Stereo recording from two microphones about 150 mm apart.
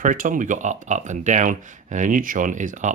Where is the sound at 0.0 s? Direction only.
60° right (ahead or behind).